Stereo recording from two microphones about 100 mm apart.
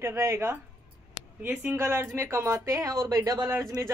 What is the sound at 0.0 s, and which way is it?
Speech, 25° right (ahead or behind).